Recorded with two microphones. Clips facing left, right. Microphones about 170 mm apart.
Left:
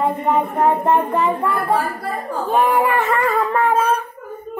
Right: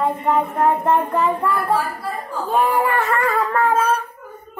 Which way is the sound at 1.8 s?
60° left (ahead or behind).